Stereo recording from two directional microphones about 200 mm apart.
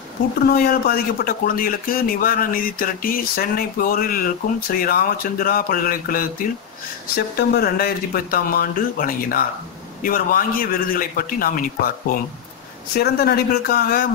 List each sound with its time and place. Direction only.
0.4 s speech: 50° left (ahead or behind)
12.9 s speech: 50° left (ahead or behind)